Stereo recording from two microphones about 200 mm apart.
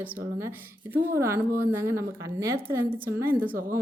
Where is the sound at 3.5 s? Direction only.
45° right (ahead or behind).